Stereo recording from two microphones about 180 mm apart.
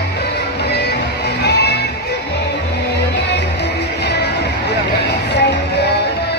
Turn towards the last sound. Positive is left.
turn(degrees=70)  # may be behind; listen again after turning